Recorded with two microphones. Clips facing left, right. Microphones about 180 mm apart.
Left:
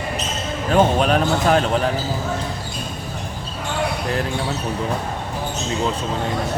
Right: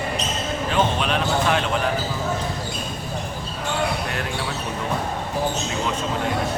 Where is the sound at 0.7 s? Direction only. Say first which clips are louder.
Left 7 dB; 45° left (ahead or behind).